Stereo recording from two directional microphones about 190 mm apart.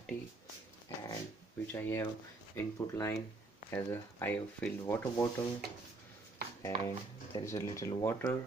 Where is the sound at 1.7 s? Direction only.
10° left (ahead or behind).